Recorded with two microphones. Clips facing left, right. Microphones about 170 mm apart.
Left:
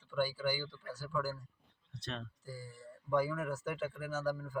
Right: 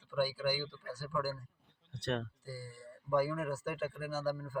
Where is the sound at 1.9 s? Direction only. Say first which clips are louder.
Right 8 dB; 65° right (ahead or behind).